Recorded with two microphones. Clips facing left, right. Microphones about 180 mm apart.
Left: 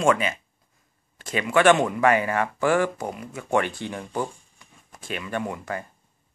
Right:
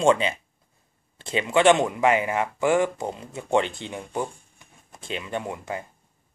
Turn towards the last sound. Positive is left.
turn(degrees=-20)  # may be behind; listen again after turning